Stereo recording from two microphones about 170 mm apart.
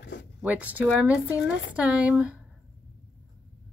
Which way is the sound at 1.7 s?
10° right (ahead or behind).